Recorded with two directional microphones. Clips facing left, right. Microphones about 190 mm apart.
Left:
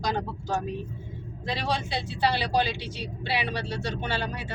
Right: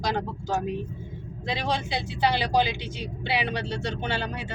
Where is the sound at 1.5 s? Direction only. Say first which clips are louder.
Right 1 dB; 20° right (ahead or behind).